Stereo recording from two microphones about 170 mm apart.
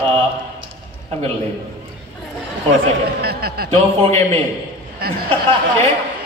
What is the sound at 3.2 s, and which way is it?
Speech, 65° right (ahead or behind).